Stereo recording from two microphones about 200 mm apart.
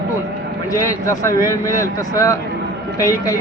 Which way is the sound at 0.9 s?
15° left (ahead or behind).